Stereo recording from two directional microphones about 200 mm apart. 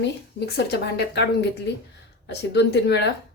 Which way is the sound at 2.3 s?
55° left (ahead or behind).